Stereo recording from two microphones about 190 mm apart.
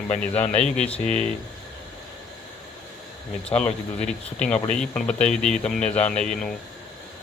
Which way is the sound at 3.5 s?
5° left (ahead or behind).